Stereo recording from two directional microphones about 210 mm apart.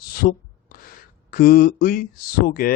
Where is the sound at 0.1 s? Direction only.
45° left (ahead or behind).